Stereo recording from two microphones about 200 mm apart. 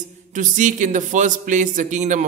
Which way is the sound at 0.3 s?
40° right (ahead or behind).